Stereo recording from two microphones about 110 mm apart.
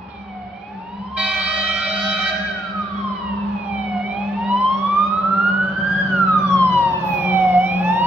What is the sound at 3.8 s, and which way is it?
Emergency vehicle, centre (ahead or behind).